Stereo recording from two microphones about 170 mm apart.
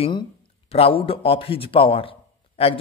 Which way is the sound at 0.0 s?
30° left (ahead or behind).